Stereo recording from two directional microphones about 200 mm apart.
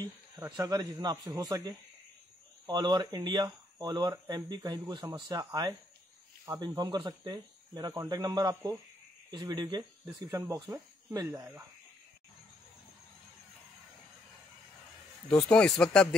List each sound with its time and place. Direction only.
0.4 s speech: 20° right (ahead or behind)
15.5 s speech: 5° left (ahead or behind)